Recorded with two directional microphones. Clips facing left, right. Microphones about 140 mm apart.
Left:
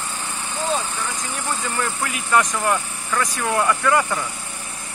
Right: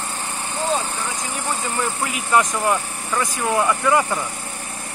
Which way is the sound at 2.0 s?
20° right (ahead or behind).